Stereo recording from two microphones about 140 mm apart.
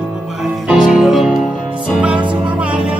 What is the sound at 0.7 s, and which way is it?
Music, 5° right (ahead or behind).